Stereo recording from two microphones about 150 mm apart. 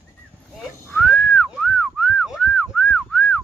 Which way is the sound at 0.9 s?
5° left (ahead or behind).